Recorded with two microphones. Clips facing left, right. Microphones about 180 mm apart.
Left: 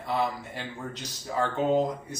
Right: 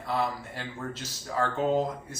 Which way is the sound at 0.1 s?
Centre (ahead or behind).